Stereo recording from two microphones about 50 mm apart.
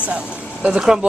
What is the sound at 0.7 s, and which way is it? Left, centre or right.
Speech, centre.